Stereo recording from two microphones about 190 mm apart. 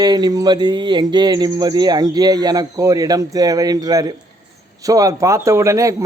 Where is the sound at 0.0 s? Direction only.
20° right (ahead or behind).